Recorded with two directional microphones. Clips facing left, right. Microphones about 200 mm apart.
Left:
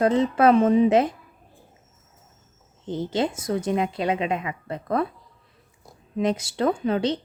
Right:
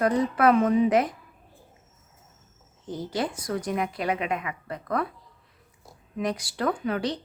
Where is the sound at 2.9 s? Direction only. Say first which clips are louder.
Left 4 dB; 25° left (ahead or behind).